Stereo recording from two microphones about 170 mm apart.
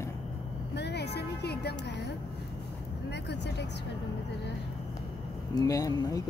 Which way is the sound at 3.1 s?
85° left.